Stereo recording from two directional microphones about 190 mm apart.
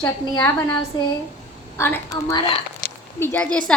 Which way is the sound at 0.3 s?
10° left (ahead or behind).